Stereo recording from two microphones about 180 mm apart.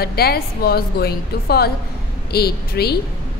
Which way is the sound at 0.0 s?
60° left (ahead or behind).